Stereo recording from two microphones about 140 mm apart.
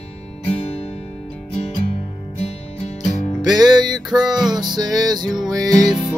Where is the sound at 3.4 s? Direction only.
30° right (ahead or behind).